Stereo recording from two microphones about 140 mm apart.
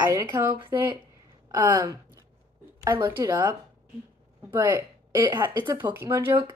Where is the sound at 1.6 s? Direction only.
25° right (ahead or behind).